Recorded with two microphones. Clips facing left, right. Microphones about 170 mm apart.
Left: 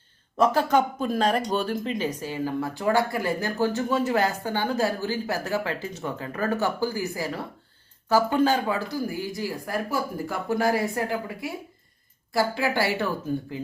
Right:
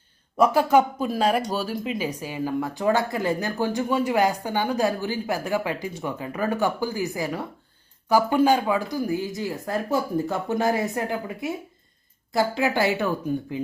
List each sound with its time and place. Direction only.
0.3 s speech: 10° right (ahead or behind)